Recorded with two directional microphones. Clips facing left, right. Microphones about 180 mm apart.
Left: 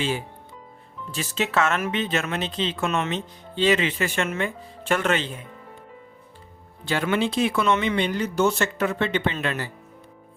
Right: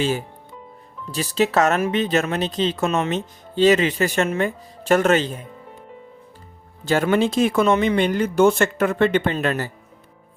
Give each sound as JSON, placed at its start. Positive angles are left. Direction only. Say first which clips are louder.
{"t": 0.0, "sound": "speech", "louder": "right 4 dB", "side_deg": -40}
{"t": 6.8, "sound": "speech", "louder": "right 5 dB", "side_deg": -45}